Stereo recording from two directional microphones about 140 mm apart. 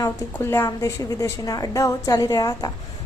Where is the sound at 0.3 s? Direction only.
15° left (ahead or behind).